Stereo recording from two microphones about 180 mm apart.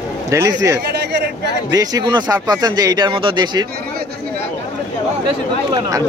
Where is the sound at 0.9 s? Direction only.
65° right (ahead or behind).